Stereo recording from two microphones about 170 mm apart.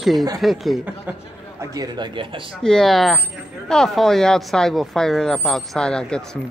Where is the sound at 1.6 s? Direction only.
20° right (ahead or behind).